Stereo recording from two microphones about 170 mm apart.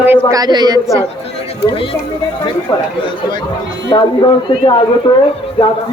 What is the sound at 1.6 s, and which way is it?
Speech, 30° left (ahead or behind).